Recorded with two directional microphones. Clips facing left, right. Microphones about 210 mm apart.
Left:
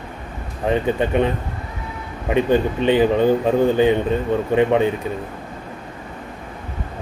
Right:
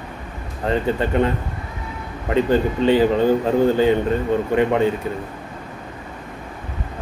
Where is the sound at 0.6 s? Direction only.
15° left (ahead or behind).